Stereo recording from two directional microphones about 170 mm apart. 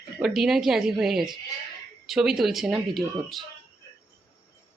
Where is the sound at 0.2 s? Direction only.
Centre (ahead or behind).